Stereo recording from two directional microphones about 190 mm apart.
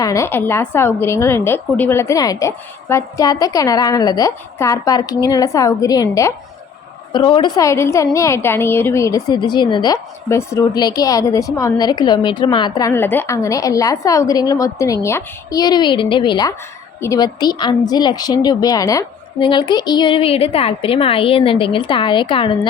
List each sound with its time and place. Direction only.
0.0 s a woman's voice: 15° left (ahead or behind)